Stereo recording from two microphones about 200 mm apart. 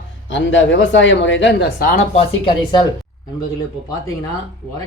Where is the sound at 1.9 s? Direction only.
30° left (ahead or behind).